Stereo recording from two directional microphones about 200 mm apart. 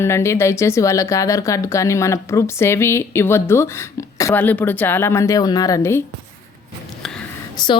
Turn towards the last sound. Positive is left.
turn(degrees=20)  # may be behind; listen again after turning